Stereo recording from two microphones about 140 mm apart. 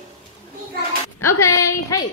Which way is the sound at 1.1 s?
20° left (ahead or behind).